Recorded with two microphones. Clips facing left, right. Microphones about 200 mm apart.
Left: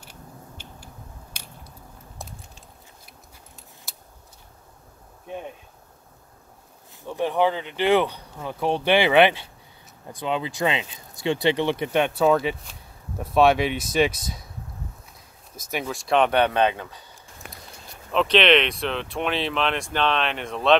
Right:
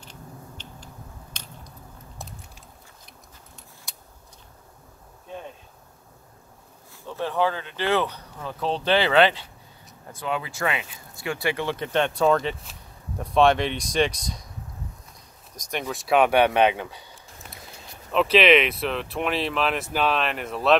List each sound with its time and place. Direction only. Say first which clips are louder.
0.0 s a sound: right 1 dB; 10° left (ahead or behind)
1.3 s squish: right 1 dB; 10° left (ahead or behind)
2.1 s a sound: left 1 dB; centre (ahead or behind)
3.9 s vehicle: even; centre (ahead or behind)
7.1 s speech: left 3 dB; 15° left (ahead or behind)
15.5 s speech: left 1 dB; 5° left (ahead or behind); by 17.0 s 15° right (ahead or behind)
18.1 s speech: right 1 dB; 5° right (ahead or behind)